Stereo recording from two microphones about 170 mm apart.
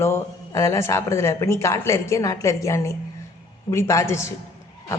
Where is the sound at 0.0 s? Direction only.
15° left (ahead or behind).